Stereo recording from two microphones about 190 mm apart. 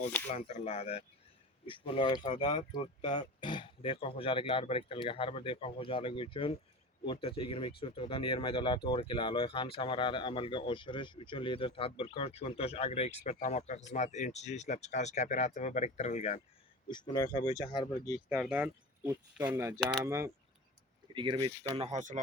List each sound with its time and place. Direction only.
0.3 s speech: 35° left (ahead or behind)
16.9 s speech: 20° left (ahead or behind)
18.3 s speech: 5° right (ahead or behind); by 21.7 s 25° right (ahead or behind)
21.8 s speech: 35° right (ahead or behind)